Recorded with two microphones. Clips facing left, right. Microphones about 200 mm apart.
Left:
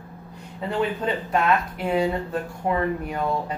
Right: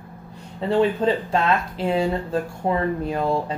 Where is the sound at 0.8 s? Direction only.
30° right (ahead or behind).